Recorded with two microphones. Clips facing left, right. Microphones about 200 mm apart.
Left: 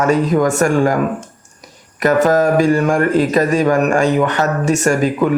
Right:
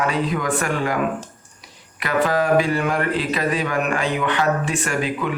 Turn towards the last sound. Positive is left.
turn(degrees=45)  # may be behind; listen again after turning